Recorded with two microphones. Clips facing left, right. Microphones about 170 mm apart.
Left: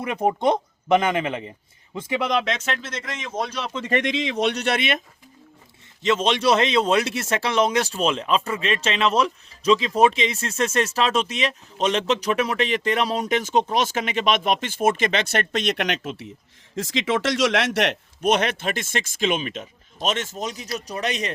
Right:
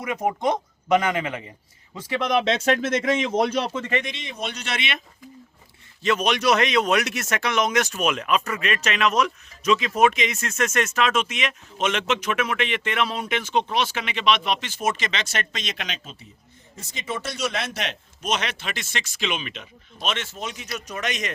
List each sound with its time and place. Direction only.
0.0 s speech: 30° left (ahead or behind)
2.4 s speech: 30° right (ahead or behind)
2.6 s speech: 50° right (ahead or behind)
4.0 s speech: 90° left; by 4.9 s 50° left (ahead or behind)
6.0 s speech: 25° left (ahead or behind); by 16.3 s 80° left
16.7 s a man's voice: 90° left; by 21.3 s 35° left (ahead or behind)